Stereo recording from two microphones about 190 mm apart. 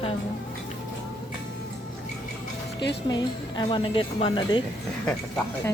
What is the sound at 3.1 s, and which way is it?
A woman's voice, 20° left (ahead or behind).